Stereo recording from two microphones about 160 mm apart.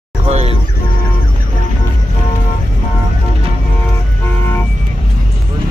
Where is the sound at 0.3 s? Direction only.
40° right (ahead or behind).